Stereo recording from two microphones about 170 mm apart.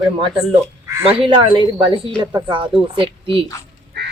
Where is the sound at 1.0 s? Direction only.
30° right (ahead or behind).